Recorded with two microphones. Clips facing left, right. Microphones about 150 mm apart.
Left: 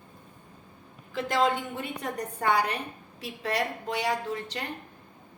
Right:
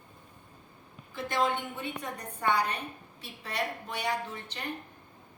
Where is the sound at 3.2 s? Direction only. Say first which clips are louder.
Left 5 dB; 90° left.